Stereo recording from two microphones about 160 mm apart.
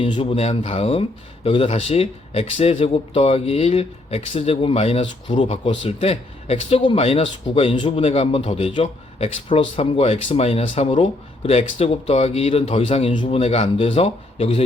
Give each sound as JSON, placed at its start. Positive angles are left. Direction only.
{"t": 0.0, "sound": "speech", "side_deg": 35}